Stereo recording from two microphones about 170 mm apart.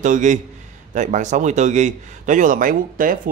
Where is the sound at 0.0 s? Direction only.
45° right (ahead or behind).